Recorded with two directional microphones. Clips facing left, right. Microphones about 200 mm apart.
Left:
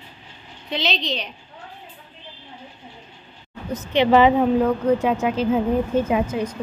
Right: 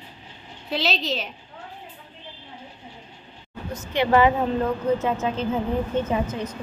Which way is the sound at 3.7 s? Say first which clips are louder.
Left 4 dB; 20° left (ahead or behind).